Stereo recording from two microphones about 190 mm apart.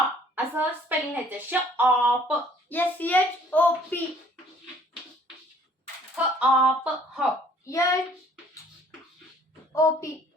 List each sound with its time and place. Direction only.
0.3 s speech: 10° right (ahead or behind)
2.6 s a child's voice: 10° left (ahead or behind)
6.4 s speech: 5° right (ahead or behind)
7.6 s a child's voice: 15° left (ahead or behind)
9.7 s a child's voice: 15° left (ahead or behind)